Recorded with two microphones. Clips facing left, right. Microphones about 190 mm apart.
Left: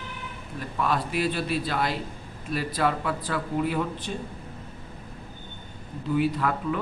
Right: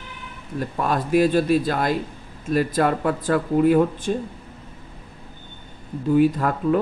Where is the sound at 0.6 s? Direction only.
45° right (ahead or behind).